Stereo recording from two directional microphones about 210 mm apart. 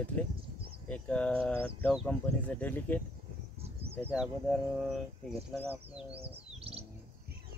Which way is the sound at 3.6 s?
30° right (ahead or behind).